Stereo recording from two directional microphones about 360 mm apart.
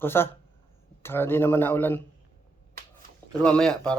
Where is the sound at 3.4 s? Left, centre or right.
Centre.